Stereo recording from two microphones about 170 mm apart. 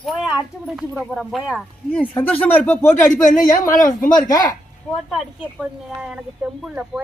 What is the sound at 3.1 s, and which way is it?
Speech, 50° left (ahead or behind).